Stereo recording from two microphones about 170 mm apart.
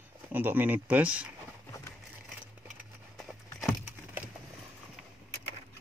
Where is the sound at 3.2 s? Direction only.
5° right (ahead or behind).